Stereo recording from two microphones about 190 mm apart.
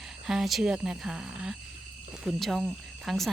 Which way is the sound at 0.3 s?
Centre (ahead or behind).